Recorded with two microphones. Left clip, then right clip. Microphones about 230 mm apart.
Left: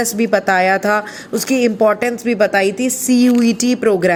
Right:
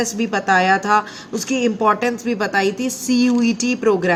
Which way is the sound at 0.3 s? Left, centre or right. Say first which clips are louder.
Left 2 dB; left.